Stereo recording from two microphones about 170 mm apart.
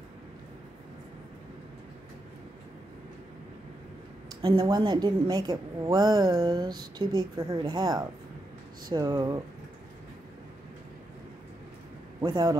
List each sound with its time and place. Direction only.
4.4 s a woman's voice: 25° right (ahead or behind)
12.2 s a woman's voice: 25° right (ahead or behind)